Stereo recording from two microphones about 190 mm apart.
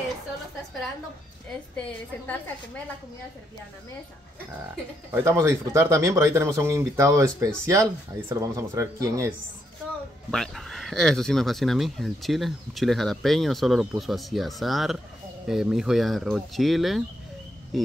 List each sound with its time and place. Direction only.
1.8 s a woman's voice: 10° left (ahead or behind)
5.1 s speech: 15° right (ahead or behind)
10.3 s speech: centre (ahead or behind)